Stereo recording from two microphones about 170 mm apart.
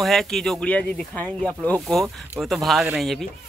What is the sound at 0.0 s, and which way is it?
Speech, centre (ahead or behind).